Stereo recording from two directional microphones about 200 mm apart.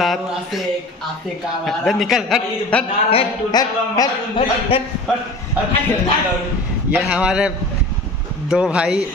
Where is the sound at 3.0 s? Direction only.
25° left (ahead or behind).